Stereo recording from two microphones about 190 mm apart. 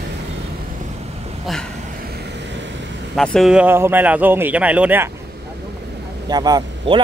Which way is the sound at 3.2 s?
Centre (ahead or behind).